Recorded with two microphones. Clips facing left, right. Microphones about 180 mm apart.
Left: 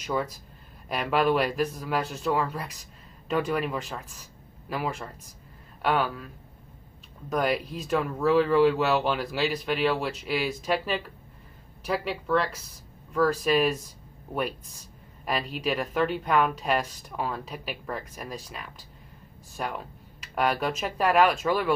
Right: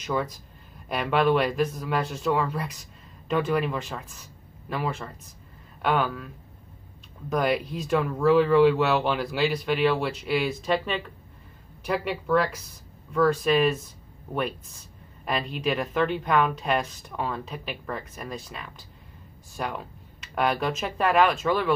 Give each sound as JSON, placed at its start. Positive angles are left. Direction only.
{"t": 0.0, "sound": "speech", "side_deg": 5}
{"t": 15.2, "sound": "speech", "side_deg": 5}